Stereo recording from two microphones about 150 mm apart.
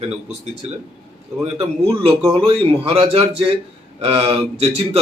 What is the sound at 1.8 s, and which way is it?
A man's voice, 40° right (ahead or behind).